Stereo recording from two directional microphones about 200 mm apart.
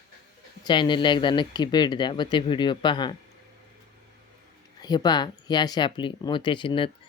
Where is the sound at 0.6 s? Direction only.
25° left (ahead or behind).